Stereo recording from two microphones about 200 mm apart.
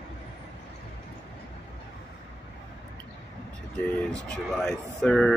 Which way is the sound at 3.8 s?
5° left (ahead or behind).